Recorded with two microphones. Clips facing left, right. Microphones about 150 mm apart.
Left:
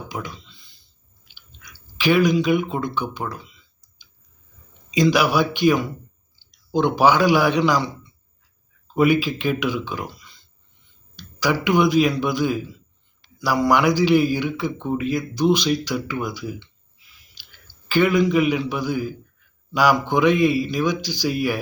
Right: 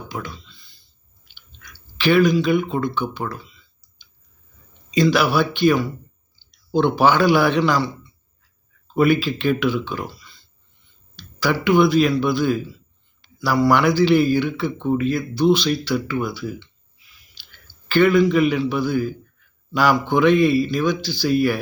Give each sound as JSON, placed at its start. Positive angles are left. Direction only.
{"t": 0.1, "sound": "a sound", "side_deg": 15}
{"t": 1.6, "sound": "speech", "side_deg": 10}
{"t": 4.9, "sound": "speech", "side_deg": 15}
{"t": 9.0, "sound": "speech", "side_deg": 15}
{"t": 17.4, "sound": "a sound", "side_deg": 15}
{"t": 17.8, "sound": "speech", "side_deg": 10}